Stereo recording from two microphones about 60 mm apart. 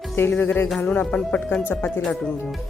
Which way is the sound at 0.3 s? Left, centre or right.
Left.